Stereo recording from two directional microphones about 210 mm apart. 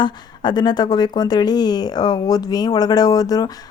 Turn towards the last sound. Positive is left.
turn(degrees=15)  # may be behind; listen again after turning